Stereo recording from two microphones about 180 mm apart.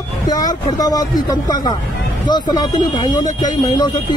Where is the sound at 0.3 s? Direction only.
20° left (ahead or behind).